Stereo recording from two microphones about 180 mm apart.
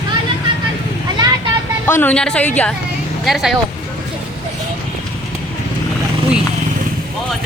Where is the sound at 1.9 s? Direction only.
10° left (ahead or behind).